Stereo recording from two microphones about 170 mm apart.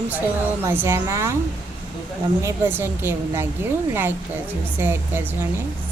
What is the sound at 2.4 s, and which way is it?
Speech, 15° right (ahead or behind).